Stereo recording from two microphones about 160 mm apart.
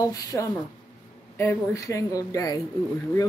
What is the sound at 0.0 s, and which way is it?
Speech, 20° left (ahead or behind).